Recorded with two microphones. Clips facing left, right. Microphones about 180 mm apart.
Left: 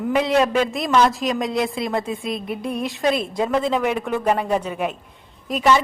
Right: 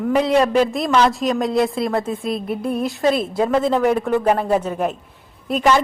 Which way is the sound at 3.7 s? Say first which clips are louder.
Right 4 dB; 40° right (ahead or behind).